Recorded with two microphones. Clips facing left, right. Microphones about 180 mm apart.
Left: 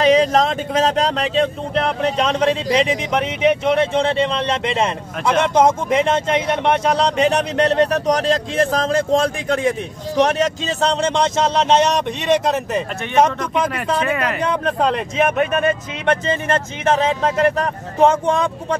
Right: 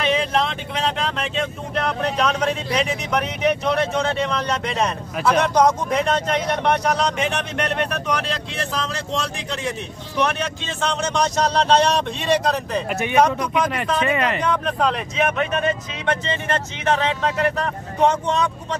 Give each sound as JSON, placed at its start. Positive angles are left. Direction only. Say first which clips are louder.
{"t": 0.0, "sound": "speech", "louder": "left 7 dB", "side_deg": 40}
{"t": 14.0, "sound": "speech", "louder": "even", "side_deg": 0}
{"t": 14.4, "sound": "speech", "louder": "left 2 dB", "side_deg": 30}
{"t": 15.1, "sound": "speech", "louder": "left 6 dB", "side_deg": 45}